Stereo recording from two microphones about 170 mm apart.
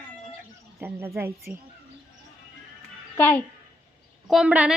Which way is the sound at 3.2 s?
10° left (ahead or behind).